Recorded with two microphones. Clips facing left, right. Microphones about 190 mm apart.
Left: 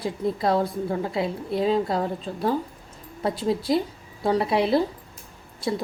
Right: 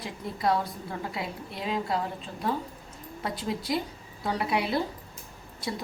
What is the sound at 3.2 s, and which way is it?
A woman's voice, 30° left (ahead or behind).